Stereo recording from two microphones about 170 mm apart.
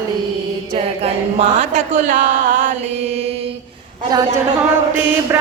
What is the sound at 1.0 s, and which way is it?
Speech, 45° right (ahead or behind).